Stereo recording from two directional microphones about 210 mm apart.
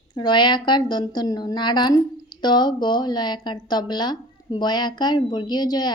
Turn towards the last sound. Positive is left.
turn(degrees=20)  # may be behind; listen again after turning